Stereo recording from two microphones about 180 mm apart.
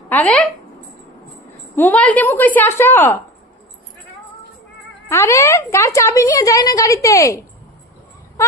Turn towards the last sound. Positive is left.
turn(degrees=20)  # may be behind; listen again after turning